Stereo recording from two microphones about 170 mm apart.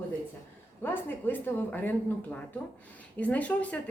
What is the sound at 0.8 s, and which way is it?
Speech, 10° left (ahead or behind).